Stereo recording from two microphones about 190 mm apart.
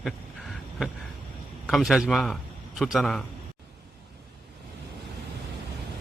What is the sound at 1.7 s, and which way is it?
Speech, centre (ahead or behind).